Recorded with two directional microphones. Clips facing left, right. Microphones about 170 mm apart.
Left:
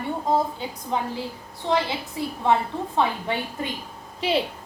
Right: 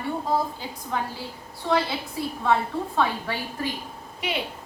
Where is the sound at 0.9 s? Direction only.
20° left (ahead or behind).